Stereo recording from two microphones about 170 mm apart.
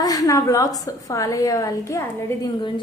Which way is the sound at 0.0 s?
20° left (ahead or behind).